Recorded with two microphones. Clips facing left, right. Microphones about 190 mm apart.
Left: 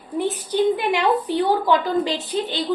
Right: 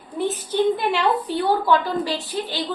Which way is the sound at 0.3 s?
15° left (ahead or behind).